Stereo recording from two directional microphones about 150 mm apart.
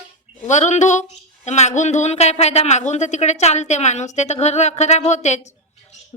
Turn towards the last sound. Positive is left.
turn(degrees=50)  # may be behind; listen again after turning